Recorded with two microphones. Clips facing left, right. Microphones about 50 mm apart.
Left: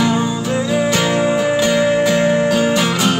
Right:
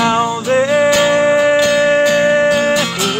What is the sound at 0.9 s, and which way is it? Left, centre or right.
Music, centre.